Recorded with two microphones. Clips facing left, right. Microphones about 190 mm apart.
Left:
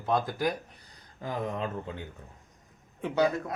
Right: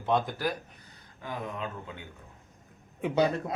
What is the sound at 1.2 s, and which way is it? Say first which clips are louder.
Speech: left 4 dB; 35° left (ahead or behind).